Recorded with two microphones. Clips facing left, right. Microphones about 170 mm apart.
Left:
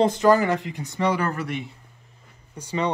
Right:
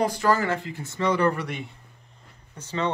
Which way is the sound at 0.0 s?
20° left (ahead or behind).